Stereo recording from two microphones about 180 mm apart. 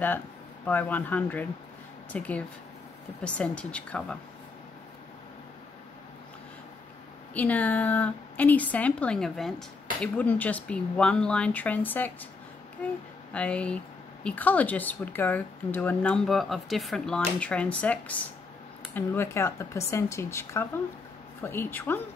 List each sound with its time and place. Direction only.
0.7 s a woman's voice: 10° left (ahead or behind)
7.3 s a woman's voice: 10° left (ahead or behind)
13.3 s a woman's voice: 5° left (ahead or behind)